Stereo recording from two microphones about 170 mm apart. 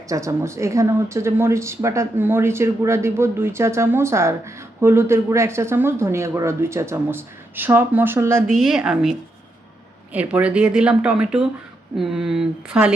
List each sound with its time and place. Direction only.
0.1 s speech: 20° right (ahead or behind)
8.5 s speech: centre (ahead or behind)